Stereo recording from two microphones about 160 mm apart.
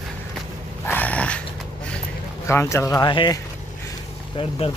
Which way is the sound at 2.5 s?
15° left (ahead or behind).